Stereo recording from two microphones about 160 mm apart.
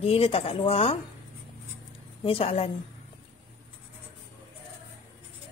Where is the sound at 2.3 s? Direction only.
40° left (ahead or behind).